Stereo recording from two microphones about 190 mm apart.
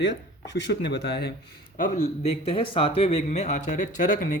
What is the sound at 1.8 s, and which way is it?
Speech, 35° left (ahead or behind).